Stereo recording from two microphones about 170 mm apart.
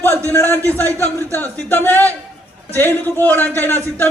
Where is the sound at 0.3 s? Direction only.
10° left (ahead or behind).